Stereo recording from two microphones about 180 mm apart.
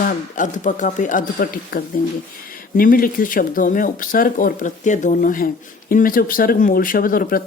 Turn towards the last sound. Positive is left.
turn(degrees=55)  # may be behind; listen again after turning